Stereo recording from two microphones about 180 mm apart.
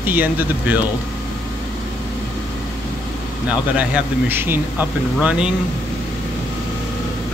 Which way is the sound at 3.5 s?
5° right (ahead or behind).